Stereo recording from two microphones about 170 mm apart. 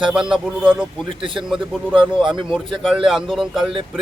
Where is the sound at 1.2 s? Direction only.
30° right (ahead or behind).